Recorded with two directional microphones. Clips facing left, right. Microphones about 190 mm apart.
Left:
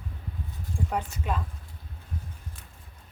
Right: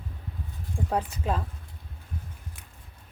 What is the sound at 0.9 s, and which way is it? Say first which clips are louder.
Speech: right 4 dB; 35° right (ahead or behind).